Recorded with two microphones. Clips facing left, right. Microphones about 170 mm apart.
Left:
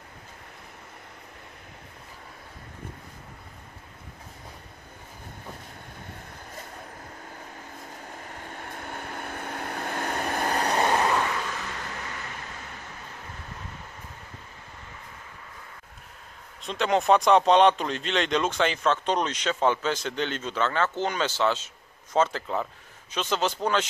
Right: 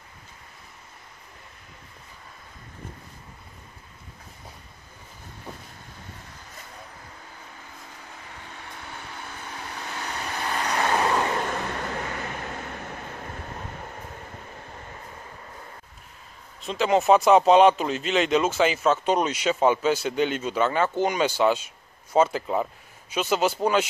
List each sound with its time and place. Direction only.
8.2 s vehicle: 50° left (ahead or behind)
11.2 s vehicle: 45° right (ahead or behind)
16.6 s speech: 5° right (ahead or behind)